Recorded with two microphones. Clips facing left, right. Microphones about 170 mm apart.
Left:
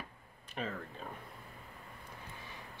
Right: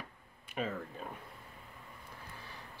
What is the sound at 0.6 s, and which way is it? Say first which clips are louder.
Speech: right 3 dB; 5° right (ahead or behind).